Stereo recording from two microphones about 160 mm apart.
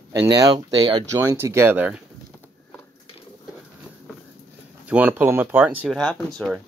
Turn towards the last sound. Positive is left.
turn(degrees=0)  # may be behind; listen again after turning